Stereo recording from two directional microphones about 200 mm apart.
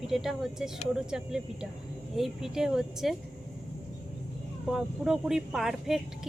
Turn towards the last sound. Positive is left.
turn(degrees=0)  # may be behind; listen again after turning